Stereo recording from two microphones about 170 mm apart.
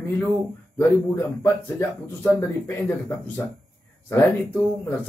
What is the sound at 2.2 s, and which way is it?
Speech, 15° left (ahead or behind).